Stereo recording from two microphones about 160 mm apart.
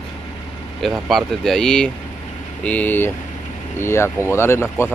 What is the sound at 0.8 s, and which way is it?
Speech, centre (ahead or behind).